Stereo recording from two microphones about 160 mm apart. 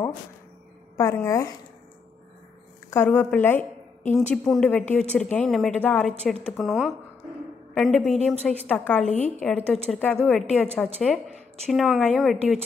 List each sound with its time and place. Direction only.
0.9 s speech: 20° left (ahead or behind)
2.9 s a woman's voice: 10° left (ahead or behind)